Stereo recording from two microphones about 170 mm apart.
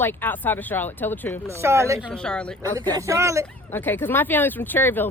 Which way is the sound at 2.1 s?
5° left (ahead or behind).